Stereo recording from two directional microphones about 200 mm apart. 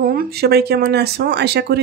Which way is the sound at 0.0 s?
45° right (ahead or behind).